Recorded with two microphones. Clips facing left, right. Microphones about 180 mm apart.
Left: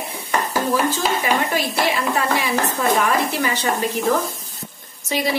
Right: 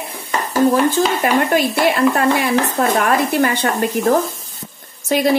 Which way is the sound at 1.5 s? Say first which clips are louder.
Right 5 dB; 55° right (ahead or behind).